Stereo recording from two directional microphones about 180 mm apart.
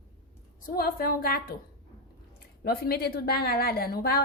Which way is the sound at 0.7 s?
55° left (ahead or behind).